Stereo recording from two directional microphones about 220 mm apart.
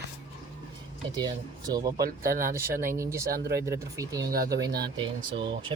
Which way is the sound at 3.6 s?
15° right (ahead or behind).